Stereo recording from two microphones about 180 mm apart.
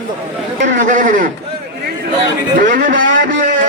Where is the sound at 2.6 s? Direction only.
50° right (ahead or behind).